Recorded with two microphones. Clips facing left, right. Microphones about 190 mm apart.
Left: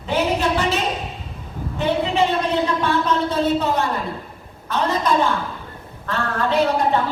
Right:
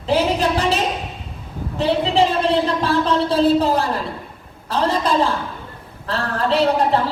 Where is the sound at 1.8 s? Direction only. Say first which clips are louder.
Right 2 dB; 35° right (ahead or behind).